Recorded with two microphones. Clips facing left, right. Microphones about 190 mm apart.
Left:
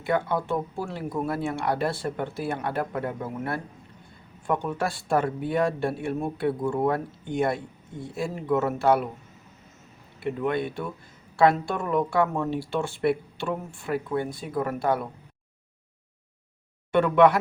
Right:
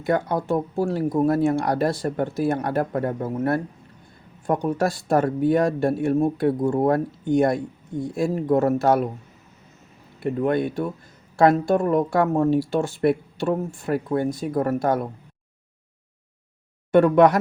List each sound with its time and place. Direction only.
0.0 s speech: 40° right (ahead or behind)
10.2 s speech: 45° right (ahead or behind)
16.9 s speech: 45° right (ahead or behind)